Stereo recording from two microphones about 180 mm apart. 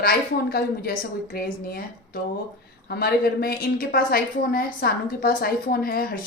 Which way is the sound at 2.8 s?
60° left (ahead or behind).